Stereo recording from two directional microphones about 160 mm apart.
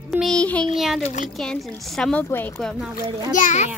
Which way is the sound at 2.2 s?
15° left (ahead or behind).